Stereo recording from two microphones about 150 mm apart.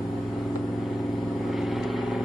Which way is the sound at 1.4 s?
Centre (ahead or behind).